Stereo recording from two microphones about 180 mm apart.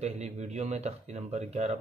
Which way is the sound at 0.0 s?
40° right (ahead or behind).